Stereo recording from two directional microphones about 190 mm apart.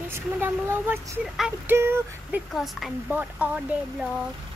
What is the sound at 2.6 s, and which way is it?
A woman's voice, centre (ahead or behind).